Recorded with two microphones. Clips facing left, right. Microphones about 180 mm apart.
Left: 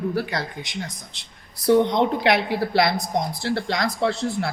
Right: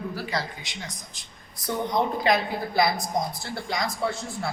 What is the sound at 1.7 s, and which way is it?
Speech, 75° left (ahead or behind).